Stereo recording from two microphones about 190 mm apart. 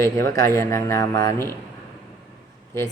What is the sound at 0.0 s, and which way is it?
Speech, 15° left (ahead or behind).